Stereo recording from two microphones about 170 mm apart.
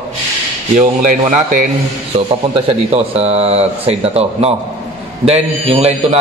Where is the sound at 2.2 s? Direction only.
35° right (ahead or behind).